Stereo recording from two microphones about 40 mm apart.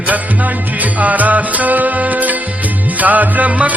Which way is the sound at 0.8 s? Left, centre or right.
Right.